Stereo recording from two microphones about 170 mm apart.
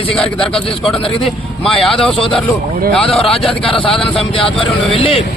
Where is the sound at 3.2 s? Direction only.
35° left (ahead or behind).